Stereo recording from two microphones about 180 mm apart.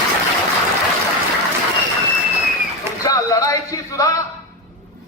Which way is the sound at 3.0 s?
20° left (ahead or behind).